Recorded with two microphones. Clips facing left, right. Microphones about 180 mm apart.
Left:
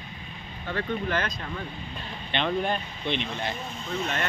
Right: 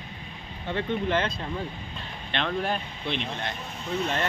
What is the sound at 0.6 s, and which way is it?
Speech, 25° right (ahead or behind).